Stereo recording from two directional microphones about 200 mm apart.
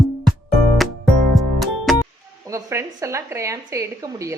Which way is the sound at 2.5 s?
15° right (ahead or behind).